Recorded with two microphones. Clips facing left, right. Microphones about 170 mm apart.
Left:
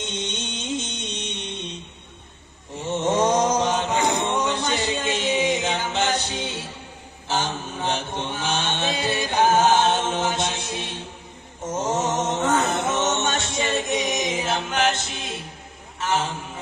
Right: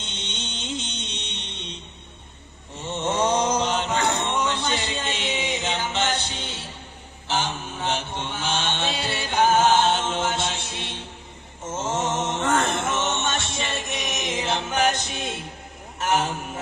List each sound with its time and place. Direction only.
0.0 s music: 10° left (ahead or behind)
2.7 s mantra: 15° left (ahead or behind)
12.5 s music: 5° left (ahead or behind)
12.8 s music: 20° left (ahead or behind)
14.7 s a capella: 10° right (ahead or behind)